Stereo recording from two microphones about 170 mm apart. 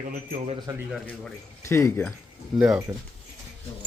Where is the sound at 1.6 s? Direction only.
15° left (ahead or behind).